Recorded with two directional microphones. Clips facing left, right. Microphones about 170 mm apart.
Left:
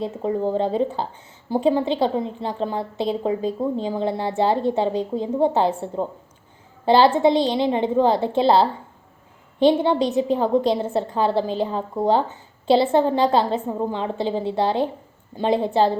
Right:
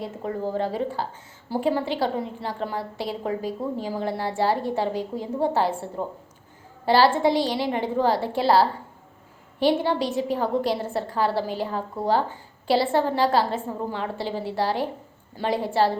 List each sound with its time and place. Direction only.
0.0 s a woman's voice: 20° left (ahead or behind)